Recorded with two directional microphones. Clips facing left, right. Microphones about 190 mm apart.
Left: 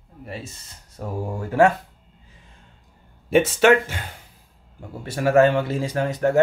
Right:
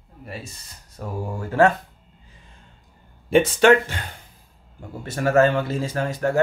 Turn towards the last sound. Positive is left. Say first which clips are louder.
# left 2 dB
turn(degrees=20)  # may be behind; listen again after turning